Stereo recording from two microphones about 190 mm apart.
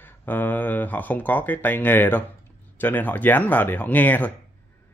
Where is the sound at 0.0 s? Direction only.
10° left (ahead or behind).